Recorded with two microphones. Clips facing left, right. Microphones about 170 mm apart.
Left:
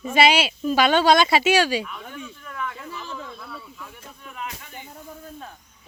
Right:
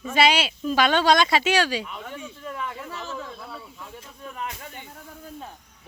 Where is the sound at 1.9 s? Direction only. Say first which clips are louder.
Right 1 dB; 25° right (ahead or behind).